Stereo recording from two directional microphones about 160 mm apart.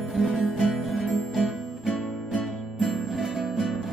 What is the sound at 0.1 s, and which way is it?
Music, centre (ahead or behind).